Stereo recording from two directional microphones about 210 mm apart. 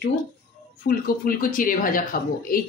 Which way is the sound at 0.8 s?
45° left (ahead or behind).